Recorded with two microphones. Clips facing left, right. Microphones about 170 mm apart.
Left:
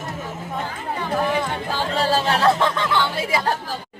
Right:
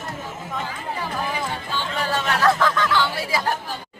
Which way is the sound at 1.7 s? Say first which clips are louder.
Left 5 dB; 35° left (ahead or behind).